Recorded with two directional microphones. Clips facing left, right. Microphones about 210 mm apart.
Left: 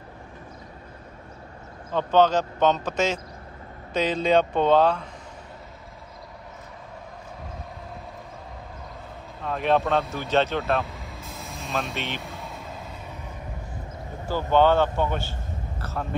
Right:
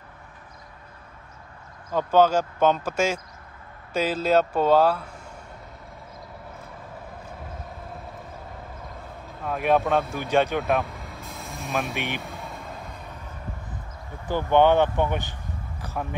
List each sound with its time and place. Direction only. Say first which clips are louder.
1.9 s speech: even; 10° right (ahead or behind)
9.4 s speech: right 1 dB; 10° right (ahead or behind)
10.9 s vehicle: even; centre (ahead or behind)
11.7 s speech: right 2 dB; 15° right (ahead or behind)
12.2 s vehicle: even; centre (ahead or behind)
14.2 s speech: right 1 dB; 15° right (ahead or behind)
15.8 s a sound: even; 15° right (ahead or behind)